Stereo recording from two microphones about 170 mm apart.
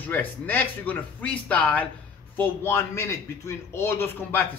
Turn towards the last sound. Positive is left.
turn(degrees=15)  # may be behind; listen again after turning